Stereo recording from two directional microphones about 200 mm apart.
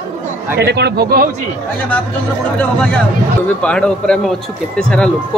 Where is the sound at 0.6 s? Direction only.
55° right (ahead or behind).